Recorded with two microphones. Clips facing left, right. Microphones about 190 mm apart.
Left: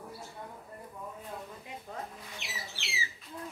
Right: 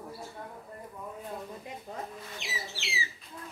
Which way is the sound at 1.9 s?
25° right (ahead or behind).